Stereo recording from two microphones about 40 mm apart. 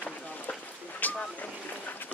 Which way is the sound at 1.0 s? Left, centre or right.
Left.